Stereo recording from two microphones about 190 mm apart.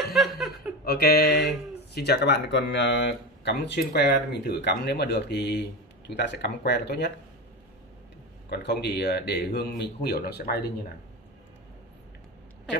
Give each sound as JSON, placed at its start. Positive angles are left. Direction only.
{"t": 0.1, "sound": "chuckle", "side_deg": 0}
{"t": 0.8, "sound": "speech", "side_deg": 55}
{"t": 8.5, "sound": "speech", "side_deg": 60}